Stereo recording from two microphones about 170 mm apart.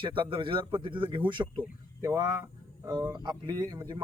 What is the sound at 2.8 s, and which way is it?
Speech, 15° right (ahead or behind).